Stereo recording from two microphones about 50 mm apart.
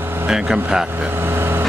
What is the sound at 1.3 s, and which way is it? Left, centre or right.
Vehicle, right.